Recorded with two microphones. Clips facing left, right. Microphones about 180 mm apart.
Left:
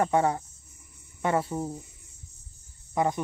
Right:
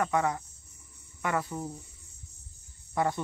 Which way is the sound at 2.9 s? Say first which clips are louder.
Left 3 dB; 20° left (ahead or behind).